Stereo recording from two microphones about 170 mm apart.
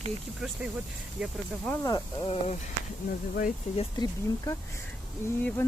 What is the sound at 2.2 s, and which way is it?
Speech, 35° left (ahead or behind).